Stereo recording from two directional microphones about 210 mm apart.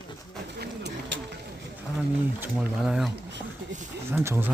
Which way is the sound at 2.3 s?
5° right (ahead or behind).